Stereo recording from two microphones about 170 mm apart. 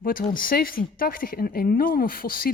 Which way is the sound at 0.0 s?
55° left (ahead or behind).